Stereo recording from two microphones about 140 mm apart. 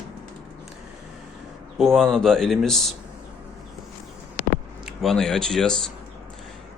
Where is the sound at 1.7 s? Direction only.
5° left (ahead or behind).